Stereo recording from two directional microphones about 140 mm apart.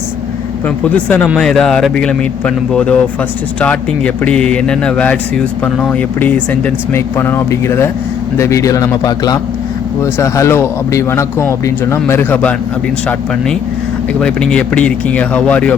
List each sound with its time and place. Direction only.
0.9 s a man's voice: 10° left (ahead or behind)